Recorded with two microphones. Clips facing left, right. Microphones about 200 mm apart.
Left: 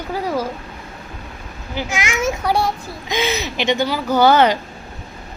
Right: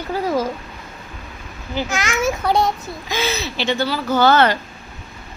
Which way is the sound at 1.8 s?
15° left (ahead or behind).